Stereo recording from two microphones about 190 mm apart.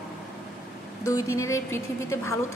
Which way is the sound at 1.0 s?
15° left (ahead or behind).